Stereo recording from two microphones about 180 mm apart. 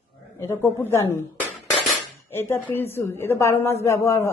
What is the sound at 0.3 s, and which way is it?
Speech, 15° left (ahead or behind).